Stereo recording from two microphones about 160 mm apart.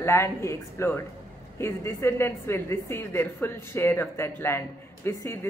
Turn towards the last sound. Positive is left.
turn(degrees=15)  # may be behind; listen again after turning